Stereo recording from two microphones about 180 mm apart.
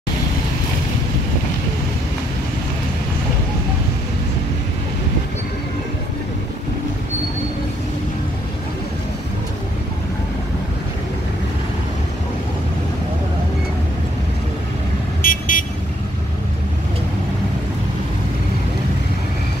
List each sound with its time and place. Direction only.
15.2 s vehicle: 50° left (ahead or behind)